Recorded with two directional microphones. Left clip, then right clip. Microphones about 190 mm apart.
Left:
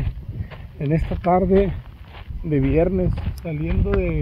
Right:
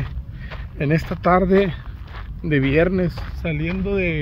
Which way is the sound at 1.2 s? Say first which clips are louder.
Right 2 dB; 35° right (ahead or behind).